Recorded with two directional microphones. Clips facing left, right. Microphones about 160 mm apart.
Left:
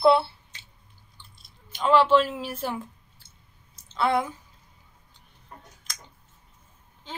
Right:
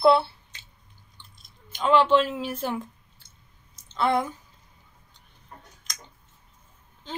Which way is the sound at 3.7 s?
5° left (ahead or behind).